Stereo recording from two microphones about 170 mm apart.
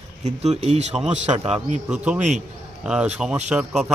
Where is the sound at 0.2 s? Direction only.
40° right (ahead or behind).